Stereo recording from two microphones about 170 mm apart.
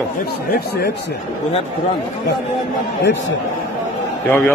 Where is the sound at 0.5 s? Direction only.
70° left (ahead or behind).